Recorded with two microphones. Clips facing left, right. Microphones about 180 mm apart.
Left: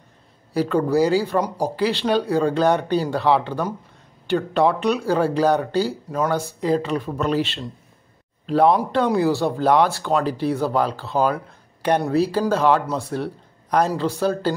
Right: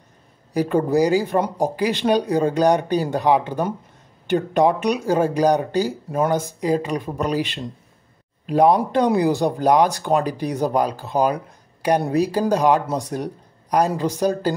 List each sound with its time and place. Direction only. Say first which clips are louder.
0.5 s speech: right 1 dB; 15° right (ahead or behind)